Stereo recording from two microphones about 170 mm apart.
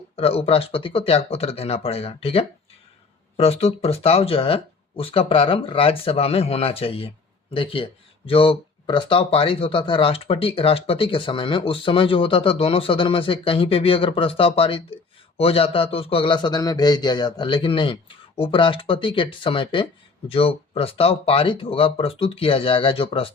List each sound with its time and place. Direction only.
0.2 s a man's voice: 35° left (ahead or behind)